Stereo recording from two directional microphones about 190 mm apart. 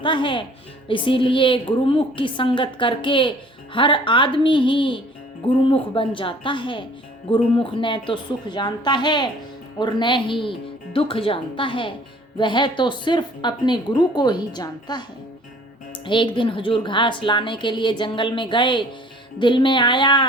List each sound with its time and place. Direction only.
0.0 s a woman's voice: 25° left (ahead or behind)
16.0 s a woman's voice: 25° left (ahead or behind)